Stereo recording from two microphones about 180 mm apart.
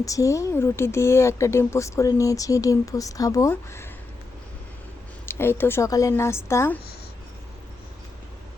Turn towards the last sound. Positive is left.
turn(degrees=15)  # may be behind; listen again after turning